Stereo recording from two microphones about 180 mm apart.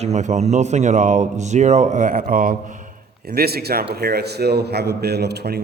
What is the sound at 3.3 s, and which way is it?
A man's voice, 60° right (ahead or behind).